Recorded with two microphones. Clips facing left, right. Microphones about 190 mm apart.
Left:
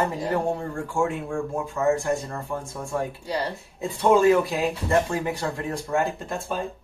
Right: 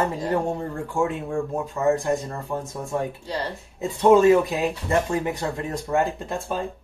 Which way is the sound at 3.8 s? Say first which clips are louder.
Right 3 dB; 20° right (ahead or behind).